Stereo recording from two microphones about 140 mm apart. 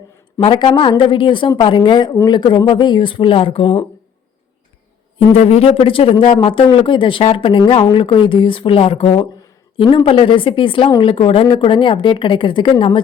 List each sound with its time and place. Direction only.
0.3 s speech: 35° left (ahead or behind)
5.3 s speech: 45° left (ahead or behind)